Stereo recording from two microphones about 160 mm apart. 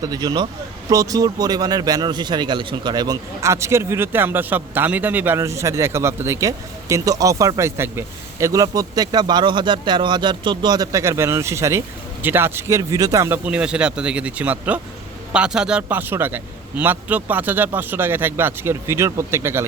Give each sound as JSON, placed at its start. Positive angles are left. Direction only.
{"t": 0.0, "sound": "a man's voice", "side_deg": -25}